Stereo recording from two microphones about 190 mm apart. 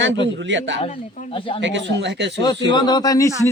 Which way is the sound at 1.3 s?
25° left (ahead or behind).